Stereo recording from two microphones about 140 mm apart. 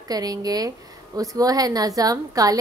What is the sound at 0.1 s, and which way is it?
A woman's voice, 25° right (ahead or behind).